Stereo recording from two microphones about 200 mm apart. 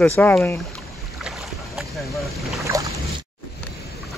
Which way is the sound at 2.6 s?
15° right (ahead or behind).